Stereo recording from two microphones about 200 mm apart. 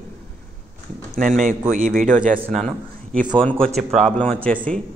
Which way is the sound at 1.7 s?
40° right (ahead or behind).